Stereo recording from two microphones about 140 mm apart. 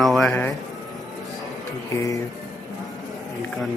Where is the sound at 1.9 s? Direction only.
25° left (ahead or behind).